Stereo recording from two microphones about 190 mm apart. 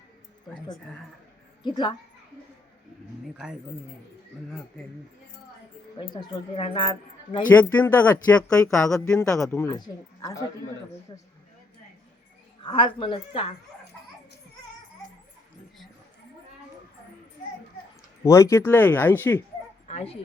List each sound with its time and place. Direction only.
1.6 s a woman's voice: 25° left (ahead or behind)
6.0 s a woman's voice: 25° left (ahead or behind)
7.5 s speech: 10° left (ahead or behind)
8.9 s speech: 5° left (ahead or behind)
9.6 s a woman's voice: 20° left (ahead or behind)
12.6 s a woman's voice: 25° left (ahead or behind)
18.2 s speech: 15° left (ahead or behind)